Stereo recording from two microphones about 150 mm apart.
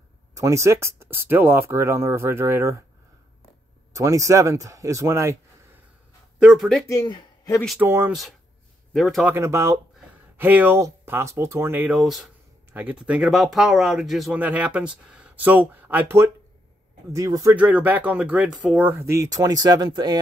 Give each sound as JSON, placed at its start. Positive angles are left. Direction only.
{"t": 0.3, "sound": "speech", "side_deg": -20}
{"t": 3.9, "sound": "speech", "side_deg": -20}
{"t": 6.4, "sound": "speech", "side_deg": -5}
{"t": 6.9, "sound": "speech", "side_deg": 20}
{"t": 7.2, "sound": "a sound", "side_deg": 20}
{"t": 7.8, "sound": "speech", "side_deg": -15}
{"t": 8.9, "sound": "speech", "side_deg": 0}
{"t": 9.2, "sound": "speech", "side_deg": -15}
{"t": 12.0, "sound": "speech", "side_deg": 0}
{"t": 17.6, "sound": "speech", "side_deg": -10}